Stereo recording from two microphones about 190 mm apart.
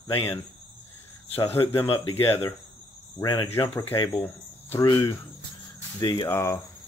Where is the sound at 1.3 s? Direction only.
10° left (ahead or behind).